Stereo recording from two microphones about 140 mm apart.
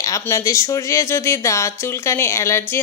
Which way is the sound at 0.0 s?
20° left (ahead or behind).